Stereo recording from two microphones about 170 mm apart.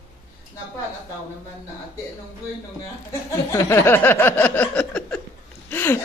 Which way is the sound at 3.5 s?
15° left (ahead or behind).